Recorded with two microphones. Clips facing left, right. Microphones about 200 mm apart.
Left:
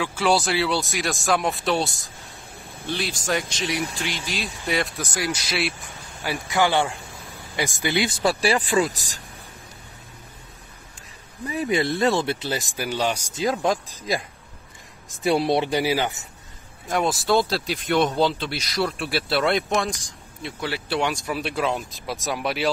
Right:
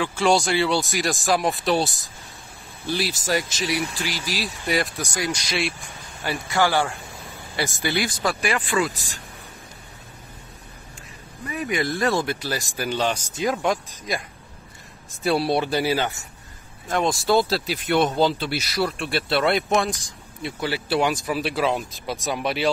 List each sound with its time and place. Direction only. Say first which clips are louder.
0.0 s speech: right 1 dB; 5° left (ahead or behind)
3.3 s speech: even; 5° right (ahead or behind)
6.2 s speech: even; 15° left (ahead or behind); by 9.1 s 40° left (ahead or behind)
11.4 s speech: left 2 dB; 30° left (ahead or behind); by 13.2 s 10° left (ahead or behind)
13.4 s speech: left 1 dB; 30° left (ahead or behind)
15.2 s speech: left 1 dB; 20° left (ahead or behind)
16.9 s speech: right 1 dB; 5° left (ahead or behind)